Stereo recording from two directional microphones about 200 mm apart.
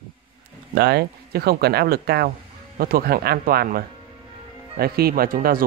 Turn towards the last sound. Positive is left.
turn(degrees=-45)  # may be behind; listen again after turning